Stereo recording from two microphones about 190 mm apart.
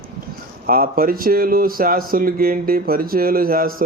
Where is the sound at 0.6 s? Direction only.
50° right (ahead or behind).